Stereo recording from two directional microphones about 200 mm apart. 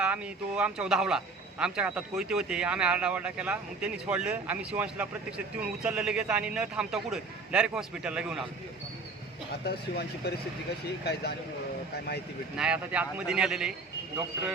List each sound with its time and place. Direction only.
0.0 s a man's voice: 5° right (ahead or behind)
9.6 s speech: 50° left (ahead or behind)
12.5 s a man's voice: 5° right (ahead or behind)